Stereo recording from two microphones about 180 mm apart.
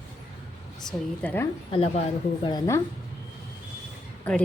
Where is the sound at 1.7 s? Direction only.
30° left (ahead or behind).